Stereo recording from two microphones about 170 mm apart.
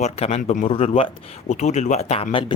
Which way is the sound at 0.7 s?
35° left (ahead or behind).